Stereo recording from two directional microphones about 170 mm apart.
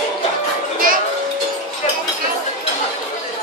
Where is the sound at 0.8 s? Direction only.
55° right (ahead or behind).